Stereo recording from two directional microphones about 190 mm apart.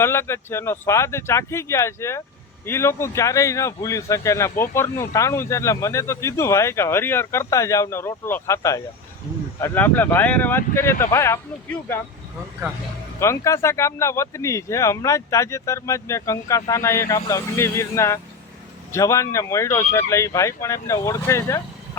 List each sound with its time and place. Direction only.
0.0 s speech: 15° left (ahead or behind)
13.1 s speech: 15° left (ahead or behind)